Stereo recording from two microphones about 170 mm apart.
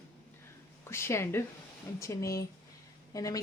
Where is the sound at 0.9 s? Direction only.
15° left (ahead or behind).